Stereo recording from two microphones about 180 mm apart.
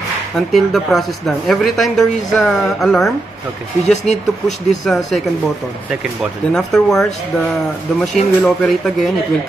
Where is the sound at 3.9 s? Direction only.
40° left (ahead or behind).